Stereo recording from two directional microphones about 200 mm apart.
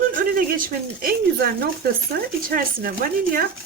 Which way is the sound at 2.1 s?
50° right (ahead or behind).